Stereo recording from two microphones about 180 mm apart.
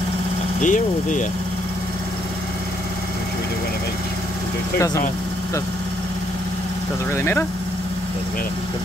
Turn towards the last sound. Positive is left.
turn(degrees=15)  # may be behind; listen again after turning